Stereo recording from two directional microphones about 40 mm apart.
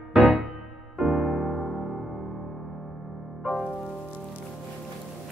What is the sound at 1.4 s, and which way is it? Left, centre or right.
Music, centre.